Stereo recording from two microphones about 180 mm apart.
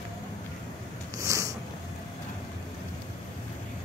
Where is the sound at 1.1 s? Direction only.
20° right (ahead or behind).